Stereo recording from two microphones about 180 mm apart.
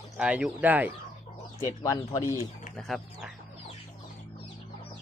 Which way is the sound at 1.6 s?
20° left (ahead or behind).